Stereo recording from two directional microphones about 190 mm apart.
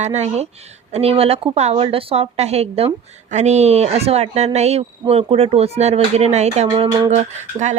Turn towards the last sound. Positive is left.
turn(degrees=-40)  # may be behind; listen again after turning